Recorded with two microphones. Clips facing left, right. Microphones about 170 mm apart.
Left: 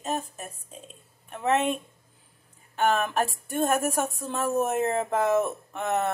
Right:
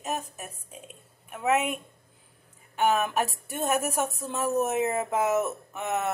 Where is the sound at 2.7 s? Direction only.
10° right (ahead or behind).